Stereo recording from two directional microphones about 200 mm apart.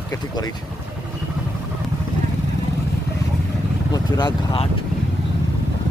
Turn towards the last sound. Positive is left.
turn(degrees=20)  # may be behind; listen again after turning